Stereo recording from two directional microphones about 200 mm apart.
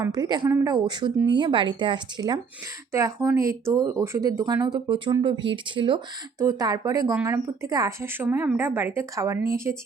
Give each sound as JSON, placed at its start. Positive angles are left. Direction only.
{"t": 0.0, "sound": "speech", "side_deg": -20}